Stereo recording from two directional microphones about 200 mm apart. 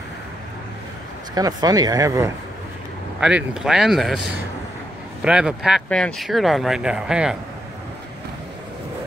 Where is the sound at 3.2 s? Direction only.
5° right (ahead or behind).